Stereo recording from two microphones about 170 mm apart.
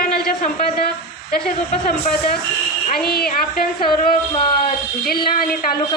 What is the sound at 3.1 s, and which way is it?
A woman's voice, 60° left (ahead or behind).